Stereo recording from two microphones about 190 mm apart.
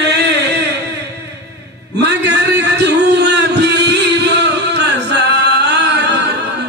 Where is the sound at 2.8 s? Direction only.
65° right (ahead or behind).